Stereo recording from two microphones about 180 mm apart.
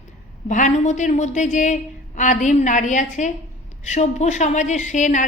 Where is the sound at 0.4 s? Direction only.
40° left (ahead or behind).